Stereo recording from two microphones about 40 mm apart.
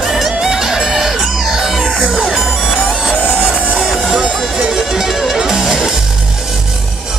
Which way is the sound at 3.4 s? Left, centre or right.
Right.